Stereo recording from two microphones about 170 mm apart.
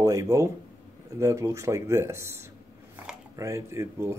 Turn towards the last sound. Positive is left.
turn(degrees=-15)  # may be behind; listen again after turning